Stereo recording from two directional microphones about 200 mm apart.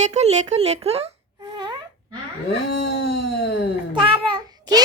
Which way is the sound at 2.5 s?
55° left (ahead or behind).